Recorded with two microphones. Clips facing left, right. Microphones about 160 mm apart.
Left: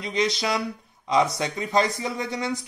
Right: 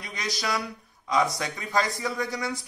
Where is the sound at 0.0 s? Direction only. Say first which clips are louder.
Left 8 dB; 20° left (ahead or behind).